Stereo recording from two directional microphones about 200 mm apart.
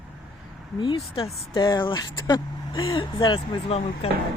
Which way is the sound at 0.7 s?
25° left (ahead or behind).